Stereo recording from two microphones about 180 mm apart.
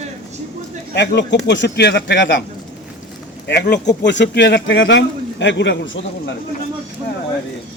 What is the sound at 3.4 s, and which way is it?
A man's voice, 65° left (ahead or behind).